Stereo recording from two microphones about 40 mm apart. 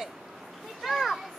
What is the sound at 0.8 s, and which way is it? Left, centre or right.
Children playing, centre.